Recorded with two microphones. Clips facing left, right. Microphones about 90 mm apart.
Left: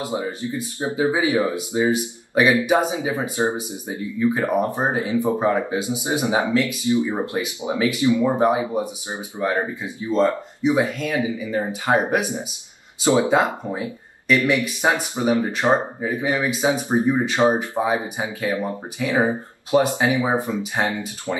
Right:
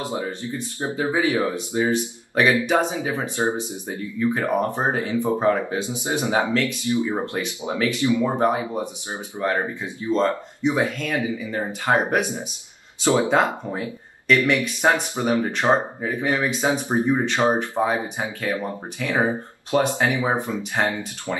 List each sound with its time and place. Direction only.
0.0 s speech: 15° left (ahead or behind)
13.7 s a sound: 10° left (ahead or behind)
14.5 s speech: 5° left (ahead or behind)
14.9 s speech: 15° left (ahead or behind)
15.6 s speech: centre (ahead or behind)
16.0 s speech: 10° left (ahead or behind)